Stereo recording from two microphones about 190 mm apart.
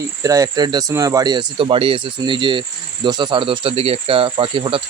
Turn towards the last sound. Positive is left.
turn(degrees=-30)  # may be behind; listen again after turning